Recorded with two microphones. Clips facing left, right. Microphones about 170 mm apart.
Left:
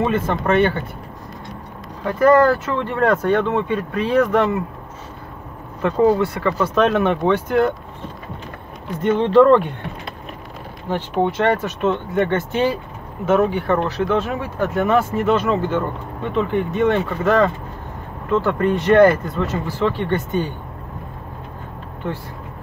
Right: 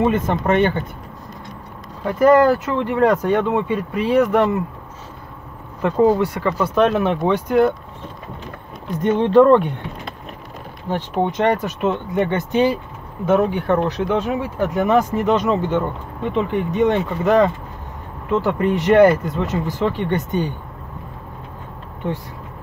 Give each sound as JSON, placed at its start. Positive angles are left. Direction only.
{"t": 0.0, "sound": "speech", "side_deg": -15}
{"t": 2.0, "sound": "speech", "side_deg": -15}
{"t": 5.8, "sound": "speech", "side_deg": -5}
{"t": 9.0, "sound": "speech", "side_deg": -15}
{"t": 11.2, "sound": "speech", "side_deg": -15}